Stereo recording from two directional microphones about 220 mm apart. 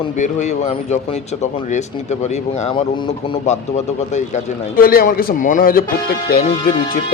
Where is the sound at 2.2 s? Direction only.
25° left (ahead or behind).